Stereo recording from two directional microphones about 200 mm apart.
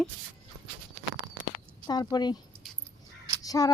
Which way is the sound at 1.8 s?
20° left (ahead or behind).